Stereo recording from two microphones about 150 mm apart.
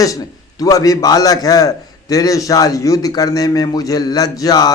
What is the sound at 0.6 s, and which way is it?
A man's voice, 25° left (ahead or behind).